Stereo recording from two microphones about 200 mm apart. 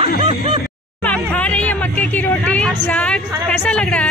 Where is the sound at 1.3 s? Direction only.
5° left (ahead or behind).